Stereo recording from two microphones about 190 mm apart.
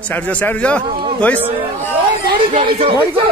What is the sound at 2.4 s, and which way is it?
Speech, 30° right (ahead or behind).